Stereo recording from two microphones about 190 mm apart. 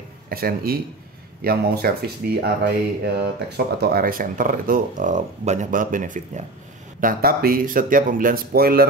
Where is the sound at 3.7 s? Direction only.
55° right (ahead or behind).